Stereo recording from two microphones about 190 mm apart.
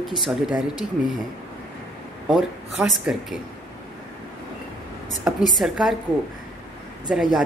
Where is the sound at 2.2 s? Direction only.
Centre (ahead or behind).